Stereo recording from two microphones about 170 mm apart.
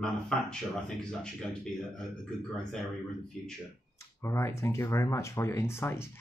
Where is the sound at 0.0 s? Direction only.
5° left (ahead or behind).